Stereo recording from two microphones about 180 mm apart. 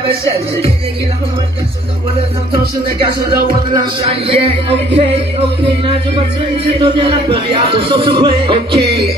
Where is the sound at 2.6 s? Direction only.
60° right (ahead or behind).